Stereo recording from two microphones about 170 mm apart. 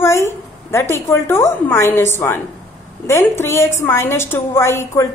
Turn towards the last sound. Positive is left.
turn(degrees=15)  # may be behind; listen again after turning